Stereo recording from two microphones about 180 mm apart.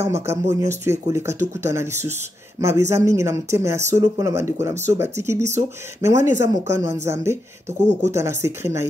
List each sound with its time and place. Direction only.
0.0 s speech: 15° right (ahead or behind)
7.6 s speech: 40° right (ahead or behind)
8.1 s speech: 15° right (ahead or behind)